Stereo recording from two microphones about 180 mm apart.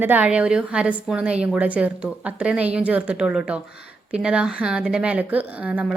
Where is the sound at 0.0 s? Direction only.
10° right (ahead or behind).